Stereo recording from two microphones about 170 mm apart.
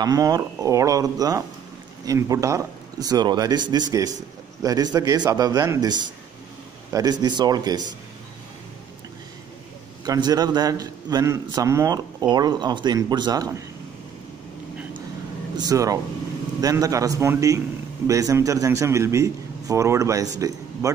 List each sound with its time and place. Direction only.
0.0 s a man's voice: 20° right (ahead or behind)
10.0 s a man's voice: 25° right (ahead or behind)
15.5 s a man's voice: 20° right (ahead or behind)